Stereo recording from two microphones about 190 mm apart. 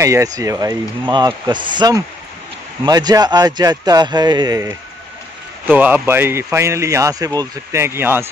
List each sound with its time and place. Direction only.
0.0 s speech: 15° right (ahead or behind)